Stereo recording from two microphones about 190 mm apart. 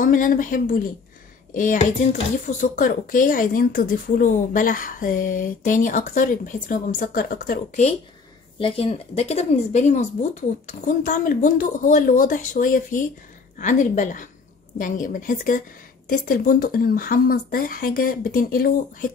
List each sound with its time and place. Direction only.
0.0 s a woman's voice: 45° left (ahead or behind)
8.5 s a woman's voice: 30° left (ahead or behind); by 19.0 s 50° left (ahead or behind)